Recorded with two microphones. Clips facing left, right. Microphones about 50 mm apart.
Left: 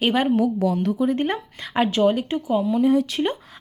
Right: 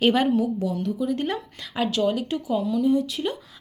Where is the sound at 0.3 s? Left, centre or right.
Left.